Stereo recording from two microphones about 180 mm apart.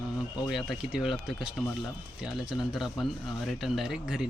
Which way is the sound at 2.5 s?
Centre (ahead or behind).